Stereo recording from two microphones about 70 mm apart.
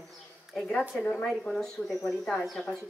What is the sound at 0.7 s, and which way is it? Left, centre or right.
Speech, left.